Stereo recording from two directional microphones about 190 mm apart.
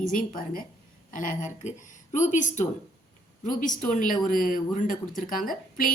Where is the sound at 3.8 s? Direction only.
45° left (ahead or behind).